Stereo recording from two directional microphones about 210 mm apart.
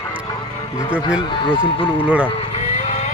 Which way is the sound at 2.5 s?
30° left (ahead or behind).